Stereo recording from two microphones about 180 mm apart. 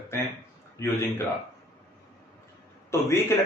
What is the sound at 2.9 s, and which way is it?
Speech, 15° left (ahead or behind).